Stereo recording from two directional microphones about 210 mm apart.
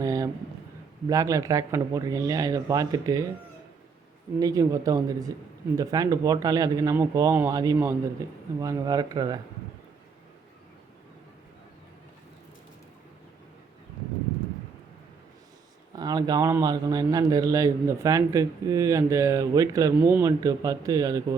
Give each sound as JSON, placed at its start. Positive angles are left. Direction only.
{"t": 0.0, "sound": "a sound", "side_deg": -15}
{"t": 1.0, "sound": "a man's voice", "side_deg": -15}
{"t": 4.4, "sound": "a man's voice", "side_deg": -15}
{"t": 16.0, "sound": "a man's voice", "side_deg": -20}